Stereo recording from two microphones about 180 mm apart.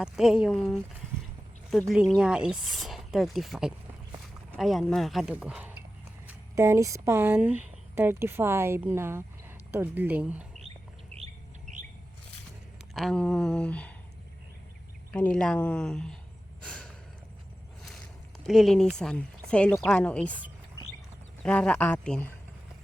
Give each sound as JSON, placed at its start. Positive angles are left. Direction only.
{"t": 0.0, "sound": "speech", "side_deg": -5}
{"t": 1.9, "sound": "speech", "side_deg": -5}
{"t": 11.1, "sound": "squawk", "side_deg": -35}
{"t": 12.9, "sound": "speech", "side_deg": 0}
{"t": 15.1, "sound": "speech", "side_deg": 5}
{"t": 16.6, "sound": "a sound", "side_deg": 5}
{"t": 18.4, "sound": "speech", "side_deg": 0}
{"t": 21.4, "sound": "speech", "side_deg": 5}